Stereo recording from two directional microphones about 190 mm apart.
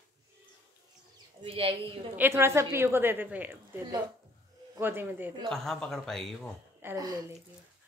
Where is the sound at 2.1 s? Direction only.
10° right (ahead or behind).